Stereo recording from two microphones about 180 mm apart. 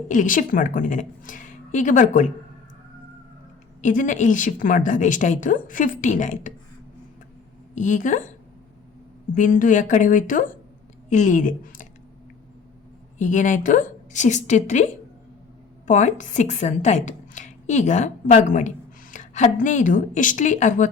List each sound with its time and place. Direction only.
0.1 s a woman's voice: 45° left (ahead or behind)
3.8 s a woman's voice: 45° left (ahead or behind)
7.8 s a woman's voice: 45° left (ahead or behind)
9.3 s a woman's voice: 45° left (ahead or behind)
13.1 s a woman's voice: 45° left (ahead or behind)
15.9 s a woman's voice: 45° left (ahead or behind)